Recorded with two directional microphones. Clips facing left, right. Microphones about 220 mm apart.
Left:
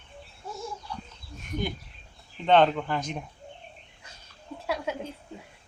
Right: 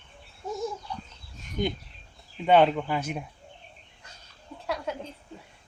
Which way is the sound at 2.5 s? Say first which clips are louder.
Right 1 dB; 10° right (ahead or behind).